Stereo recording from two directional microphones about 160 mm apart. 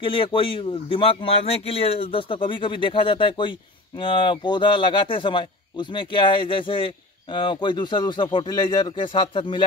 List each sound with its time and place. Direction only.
0.0 s a man's voice: 30° left (ahead or behind)